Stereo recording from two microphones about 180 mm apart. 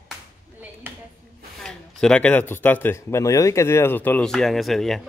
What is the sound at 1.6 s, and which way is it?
Speech, 5° left (ahead or behind).